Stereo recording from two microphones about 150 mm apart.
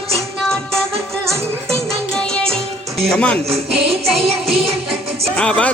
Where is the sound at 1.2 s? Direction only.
20° right (ahead or behind).